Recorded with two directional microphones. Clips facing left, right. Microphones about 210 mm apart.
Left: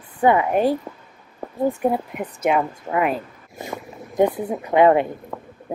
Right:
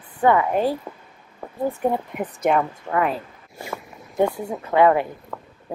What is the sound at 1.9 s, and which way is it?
Speech, centre (ahead or behind).